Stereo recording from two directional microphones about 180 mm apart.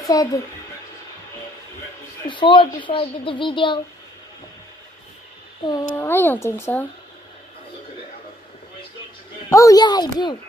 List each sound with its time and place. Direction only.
0.1 s a child's voice: 20° left (ahead or behind)
2.2 s a child's voice: 25° left (ahead or behind)
5.7 s a child's voice: 15° left (ahead or behind)
9.5 s a child's voice: 20° left (ahead or behind)